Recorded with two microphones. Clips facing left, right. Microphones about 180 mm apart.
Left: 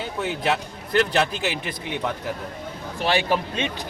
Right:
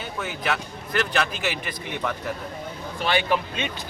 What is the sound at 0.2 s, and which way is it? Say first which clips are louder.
Speech: left 4 dB; 25° left (ahead or behind).